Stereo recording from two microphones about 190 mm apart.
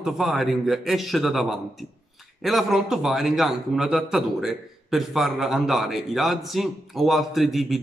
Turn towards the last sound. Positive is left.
turn(degrees=0)  # may be behind; listen again after turning